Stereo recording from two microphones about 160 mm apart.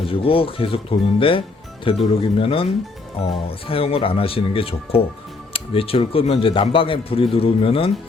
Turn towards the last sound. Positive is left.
turn(degrees=35)  # may be behind; listen again after turning